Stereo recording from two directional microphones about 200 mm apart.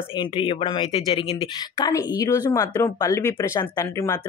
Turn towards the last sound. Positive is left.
turn(degrees=15)  # may be behind; listen again after turning